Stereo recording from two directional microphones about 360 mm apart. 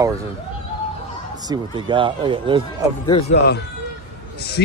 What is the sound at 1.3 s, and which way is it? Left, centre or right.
Speech, centre.